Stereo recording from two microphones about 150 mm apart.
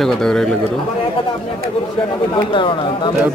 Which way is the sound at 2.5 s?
35° left (ahead or behind).